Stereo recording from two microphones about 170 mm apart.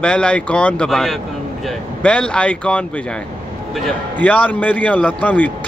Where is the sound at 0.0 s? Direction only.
5° left (ahead or behind).